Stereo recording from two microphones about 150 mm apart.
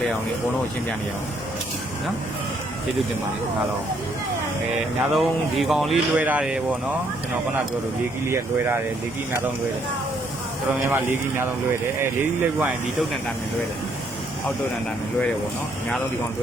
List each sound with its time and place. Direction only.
5.1 s speech: centre (ahead or behind)
8.3 s speech: 15° right (ahead or behind)
10.9 s speech: 15° right (ahead or behind)